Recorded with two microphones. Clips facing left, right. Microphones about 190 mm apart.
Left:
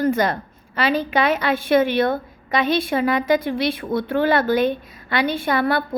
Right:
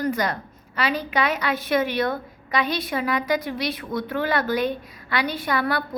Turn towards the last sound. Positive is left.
turn(degrees=25)  # may be behind; listen again after turning